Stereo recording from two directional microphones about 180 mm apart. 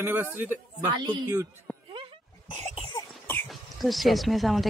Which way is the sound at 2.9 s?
15° left (ahead or behind).